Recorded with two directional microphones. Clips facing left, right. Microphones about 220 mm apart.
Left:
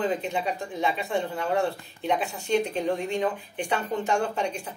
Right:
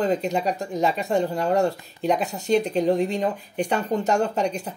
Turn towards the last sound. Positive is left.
turn(degrees=-40)  # may be behind; listen again after turning